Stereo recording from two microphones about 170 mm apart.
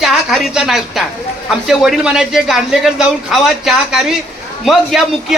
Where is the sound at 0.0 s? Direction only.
Centre (ahead or behind).